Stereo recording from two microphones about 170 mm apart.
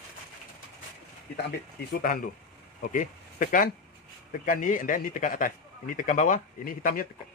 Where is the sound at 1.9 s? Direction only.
55° left (ahead or behind).